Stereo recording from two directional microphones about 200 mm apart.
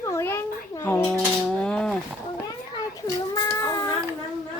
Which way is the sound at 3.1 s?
15° left (ahead or behind).